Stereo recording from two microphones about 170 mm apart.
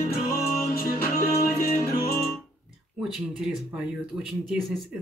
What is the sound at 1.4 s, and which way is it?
Music, 60° left (ahead or behind).